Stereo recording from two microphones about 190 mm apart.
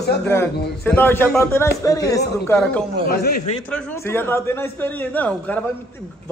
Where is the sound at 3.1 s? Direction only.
55° left (ahead or behind).